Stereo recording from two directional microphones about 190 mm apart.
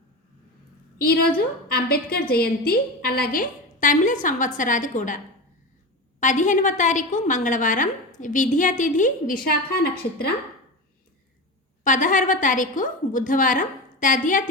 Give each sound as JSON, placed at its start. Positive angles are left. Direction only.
{"t": 0.9, "sound": "a woman's voice", "side_deg": 55}
{"t": 11.8, "sound": "a woman's voice", "side_deg": 40}